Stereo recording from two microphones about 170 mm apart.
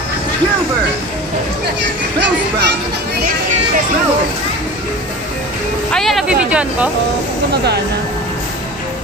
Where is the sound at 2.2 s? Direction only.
90° right.